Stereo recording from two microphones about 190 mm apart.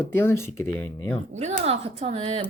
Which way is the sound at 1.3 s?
35° right (ahead or behind).